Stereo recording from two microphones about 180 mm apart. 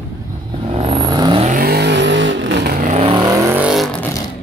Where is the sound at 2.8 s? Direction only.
35° right (ahead or behind).